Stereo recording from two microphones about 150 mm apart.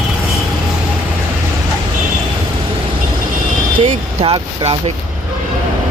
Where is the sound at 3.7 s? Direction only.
40° right (ahead or behind).